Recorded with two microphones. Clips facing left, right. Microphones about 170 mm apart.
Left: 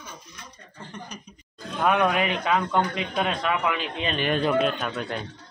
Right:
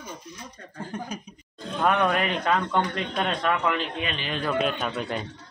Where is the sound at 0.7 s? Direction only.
50° right (ahead or behind).